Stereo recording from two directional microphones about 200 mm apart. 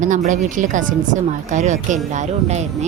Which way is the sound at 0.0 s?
40° right (ahead or behind).